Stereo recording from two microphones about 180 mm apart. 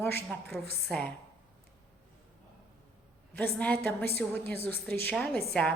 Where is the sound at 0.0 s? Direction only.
10° left (ahead or behind).